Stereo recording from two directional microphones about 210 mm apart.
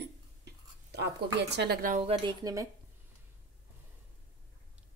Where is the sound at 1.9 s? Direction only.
30° right (ahead or behind).